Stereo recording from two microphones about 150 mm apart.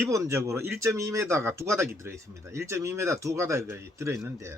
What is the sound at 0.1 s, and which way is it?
Speech, 20° right (ahead or behind).